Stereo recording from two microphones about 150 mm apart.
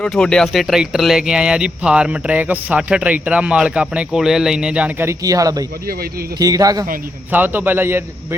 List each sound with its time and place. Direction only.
0.0 s a man's voice: 5° left (ahead or behind); by 6.8 s 25° right (ahead or behind)
7.3 s speech: 10° right (ahead or behind)